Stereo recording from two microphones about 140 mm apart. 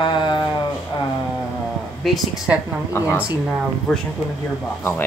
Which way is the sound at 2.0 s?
Centre (ahead or behind).